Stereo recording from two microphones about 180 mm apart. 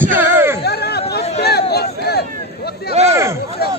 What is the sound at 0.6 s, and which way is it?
Speech, 65° left (ahead or behind).